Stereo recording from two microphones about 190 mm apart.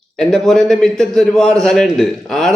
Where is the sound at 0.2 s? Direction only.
5° left (ahead or behind).